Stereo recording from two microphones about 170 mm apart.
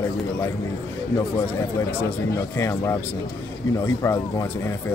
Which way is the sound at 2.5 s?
15° left (ahead or behind).